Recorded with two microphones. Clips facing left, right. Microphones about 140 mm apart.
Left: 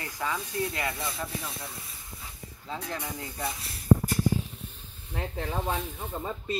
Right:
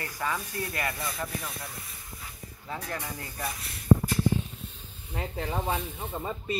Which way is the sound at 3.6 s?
35° left (ahead or behind).